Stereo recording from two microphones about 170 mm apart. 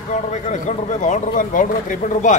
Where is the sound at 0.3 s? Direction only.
45° left (ahead or behind).